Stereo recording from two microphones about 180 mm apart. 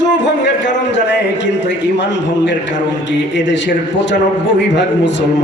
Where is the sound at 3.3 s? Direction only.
80° left.